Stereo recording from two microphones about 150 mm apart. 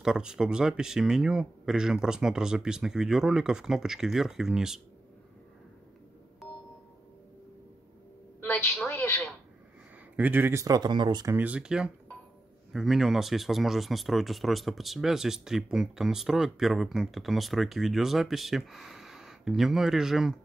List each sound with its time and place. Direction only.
0.0 s speech: 5° right (ahead or behind)
6.4 s music: centre (ahead or behind)
8.4 s a sound: 15° left (ahead or behind)
10.1 s speech: 10° right (ahead or behind); by 11.3 s 30° right (ahead or behind)
11.3 s speech: 10° right (ahead or behind)